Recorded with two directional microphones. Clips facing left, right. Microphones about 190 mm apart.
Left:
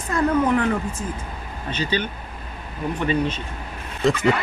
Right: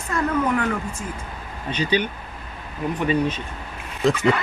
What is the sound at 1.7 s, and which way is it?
A man's voice, 15° right (ahead or behind).